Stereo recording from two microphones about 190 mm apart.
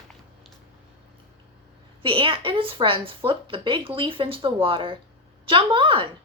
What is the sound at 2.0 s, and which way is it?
A woman's voice, 25° right (ahead or behind).